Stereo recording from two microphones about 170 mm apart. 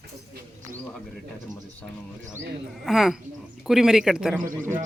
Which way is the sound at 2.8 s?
Centre (ahead or behind).